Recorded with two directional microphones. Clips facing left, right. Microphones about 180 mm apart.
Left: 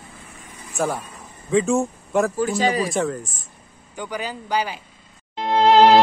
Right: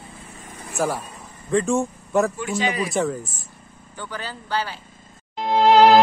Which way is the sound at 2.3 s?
35° left (ahead or behind).